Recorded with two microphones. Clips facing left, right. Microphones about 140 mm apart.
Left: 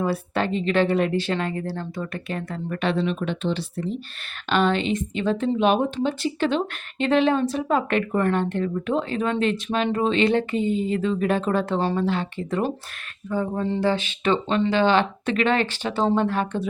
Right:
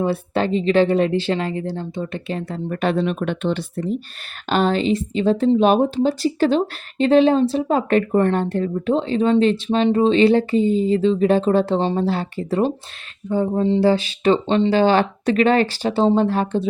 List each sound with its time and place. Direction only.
0.0 s a woman's voice: 30° right (ahead or behind); by 3.6 s 55° right (ahead or behind)
4.4 s a woman's voice: 40° right (ahead or behind); by 13.7 s 20° right (ahead or behind)
13.8 s a woman's voice: 35° right (ahead or behind)